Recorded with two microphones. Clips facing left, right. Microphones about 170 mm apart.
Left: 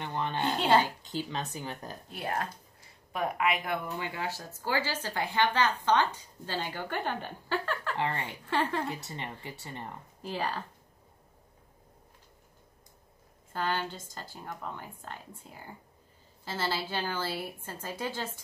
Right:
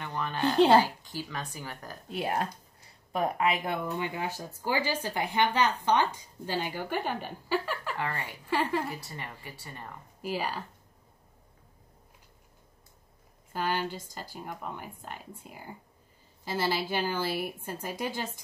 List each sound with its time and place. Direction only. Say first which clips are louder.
0.0 s speech: right 1 dB; 20° left (ahead or behind)
2.1 s speech: right 4 dB; 25° right (ahead or behind)
4.0 s speech: right 2 dB; 20° right (ahead or behind)
8.8 s speech: left 1 dB; 20° left (ahead or behind)
10.2 s speech: right 1 dB; 10° right (ahead or behind)
13.5 s speech: right 1 dB; 10° right (ahead or behind)